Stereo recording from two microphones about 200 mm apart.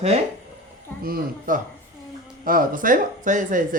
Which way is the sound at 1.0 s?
45° right (ahead or behind).